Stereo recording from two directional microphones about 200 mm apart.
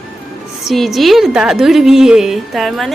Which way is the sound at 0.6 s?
Centre (ahead or behind).